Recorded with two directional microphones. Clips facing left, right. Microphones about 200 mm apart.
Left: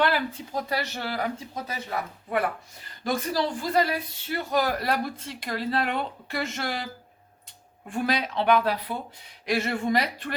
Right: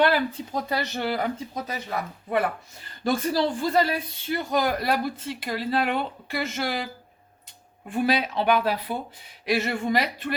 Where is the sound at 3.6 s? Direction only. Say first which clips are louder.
Right 2 dB; 30° right (ahead or behind); by 6.8 s 5° right (ahead or behind).